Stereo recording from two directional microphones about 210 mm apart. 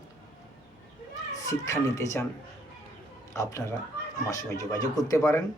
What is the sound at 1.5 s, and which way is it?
Speech, 15° left (ahead or behind).